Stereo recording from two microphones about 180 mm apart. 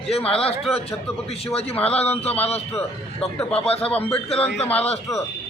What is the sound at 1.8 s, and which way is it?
Speech, 35° left (ahead or behind).